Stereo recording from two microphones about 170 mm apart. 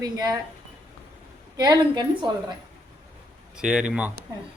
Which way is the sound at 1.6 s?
25° right (ahead or behind).